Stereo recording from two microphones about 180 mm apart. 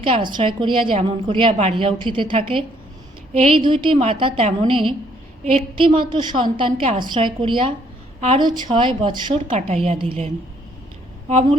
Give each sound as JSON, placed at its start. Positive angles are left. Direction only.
{"t": 0.0, "sound": "a woman's voice", "side_deg": -30}